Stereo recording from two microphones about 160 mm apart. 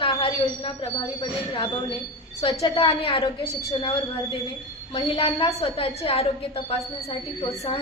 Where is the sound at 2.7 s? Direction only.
35° left (ahead or behind).